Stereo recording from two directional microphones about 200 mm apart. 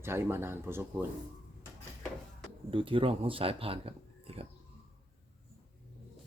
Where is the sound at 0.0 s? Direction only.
10° right (ahead or behind).